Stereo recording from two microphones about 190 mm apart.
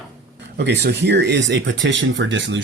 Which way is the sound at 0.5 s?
65° right (ahead or behind).